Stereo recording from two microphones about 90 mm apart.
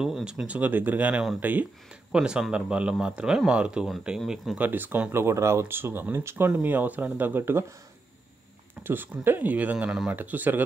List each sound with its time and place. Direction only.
0.0 s speech: 10° right (ahead or behind)
4.6 s speech: 20° right (ahead or behind)
8.8 s speech: 20° right (ahead or behind)
9.8 s speech: 5° right (ahead or behind)
10.1 s speech: 20° right (ahead or behind)